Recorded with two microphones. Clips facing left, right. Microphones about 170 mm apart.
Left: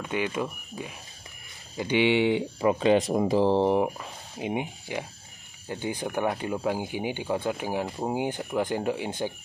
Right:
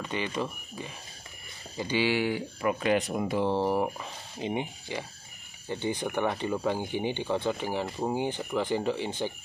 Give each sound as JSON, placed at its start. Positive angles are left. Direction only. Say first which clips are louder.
{"t": 0.0, "sound": "speech", "louder": "left 3 dB", "side_deg": 5}
{"t": 3.8, "sound": "speech", "louder": "left 2 dB", "side_deg": 10}